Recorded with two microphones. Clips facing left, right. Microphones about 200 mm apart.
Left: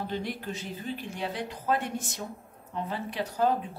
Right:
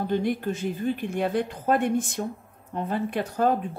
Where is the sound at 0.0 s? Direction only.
50° right (ahead or behind).